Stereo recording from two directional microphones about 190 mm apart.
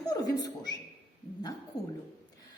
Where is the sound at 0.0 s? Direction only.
20° left (ahead or behind).